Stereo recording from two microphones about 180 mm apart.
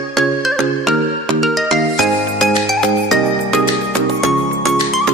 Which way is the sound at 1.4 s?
Centre (ahead or behind).